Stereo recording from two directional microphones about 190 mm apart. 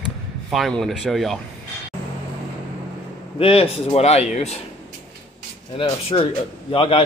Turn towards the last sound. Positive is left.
turn(degrees=30)  # may be behind; listen again after turning